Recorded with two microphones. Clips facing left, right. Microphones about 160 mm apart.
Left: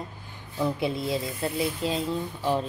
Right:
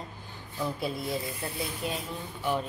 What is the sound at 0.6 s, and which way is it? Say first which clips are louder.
Cutlery: left 5 dB; 25° left (ahead or behind).